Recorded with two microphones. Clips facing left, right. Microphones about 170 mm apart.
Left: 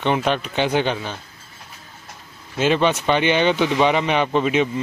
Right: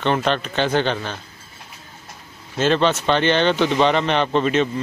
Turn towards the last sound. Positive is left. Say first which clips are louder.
# even
turn(degrees=10)  # may be behind; listen again after turning